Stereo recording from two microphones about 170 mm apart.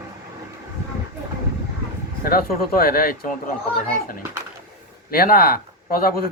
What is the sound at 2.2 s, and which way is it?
Speech, 60° left (ahead or behind).